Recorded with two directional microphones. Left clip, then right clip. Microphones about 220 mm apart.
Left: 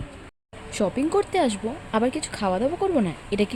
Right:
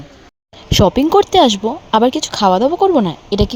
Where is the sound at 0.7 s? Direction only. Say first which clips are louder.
Right 12 dB; 35° right (ahead or behind).